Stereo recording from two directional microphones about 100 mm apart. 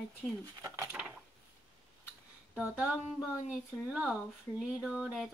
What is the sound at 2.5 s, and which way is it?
Speech, 10° right (ahead or behind).